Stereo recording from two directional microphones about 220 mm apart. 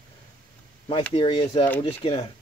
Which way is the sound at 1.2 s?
25° left (ahead or behind).